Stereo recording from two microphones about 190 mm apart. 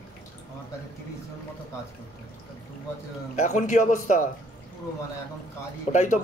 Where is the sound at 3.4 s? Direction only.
40° left (ahead or behind).